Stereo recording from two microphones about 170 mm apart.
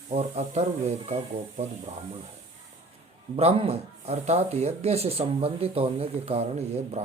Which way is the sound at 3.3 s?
35° right (ahead or behind).